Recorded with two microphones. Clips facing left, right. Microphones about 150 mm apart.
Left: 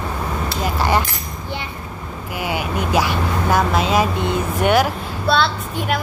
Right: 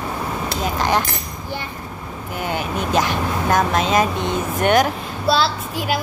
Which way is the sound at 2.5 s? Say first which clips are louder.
Left 1 dB; 5° left (ahead or behind).